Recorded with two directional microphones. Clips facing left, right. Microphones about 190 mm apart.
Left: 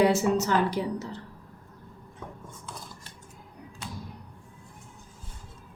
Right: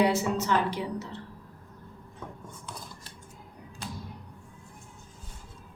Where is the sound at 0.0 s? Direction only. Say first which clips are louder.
Left 3 dB; 45° left (ahead or behind).